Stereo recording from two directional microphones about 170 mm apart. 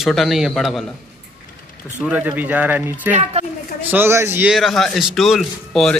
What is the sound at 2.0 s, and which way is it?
Speech, 10° right (ahead or behind).